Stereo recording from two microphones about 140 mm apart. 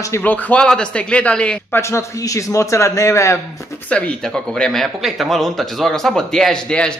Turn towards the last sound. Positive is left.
turn(degrees=5)  # may be behind; listen again after turning